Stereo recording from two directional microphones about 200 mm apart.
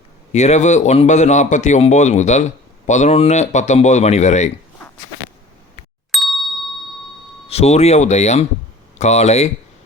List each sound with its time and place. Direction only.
0.3 s a man's voice: 35° left (ahead or behind)
6.1 s ding: centre (ahead or behind)
7.4 s a man's voice: 30° left (ahead or behind)